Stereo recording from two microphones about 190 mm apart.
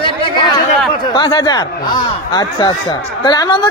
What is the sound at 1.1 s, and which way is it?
Speech, 20° left (ahead or behind).